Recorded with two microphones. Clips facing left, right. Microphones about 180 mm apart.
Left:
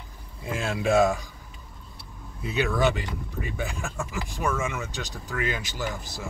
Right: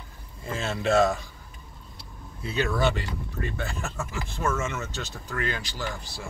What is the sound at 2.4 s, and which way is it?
Speech, 15° left (ahead or behind).